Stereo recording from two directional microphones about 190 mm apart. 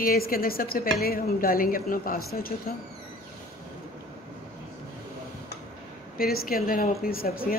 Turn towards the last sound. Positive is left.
turn(degrees=50)  # may be behind; listen again after turning